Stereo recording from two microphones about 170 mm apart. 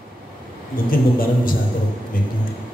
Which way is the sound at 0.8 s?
55° left (ahead or behind).